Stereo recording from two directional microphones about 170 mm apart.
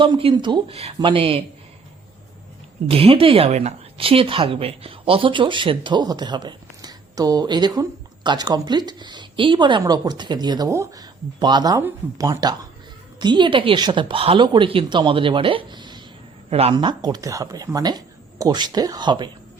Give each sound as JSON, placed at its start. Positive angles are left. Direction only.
{"t": 0.0, "sound": "speech", "side_deg": -30}
{"t": 2.8, "sound": "speech", "side_deg": -35}
{"t": 16.5, "sound": "speech", "side_deg": -35}
{"t": 16.7, "sound": "speech", "side_deg": -25}